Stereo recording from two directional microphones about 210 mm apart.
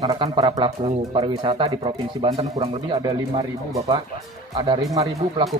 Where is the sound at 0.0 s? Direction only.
20° right (ahead or behind).